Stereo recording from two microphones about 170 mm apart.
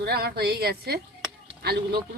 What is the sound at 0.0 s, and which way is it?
Speech, 70° right (ahead or behind).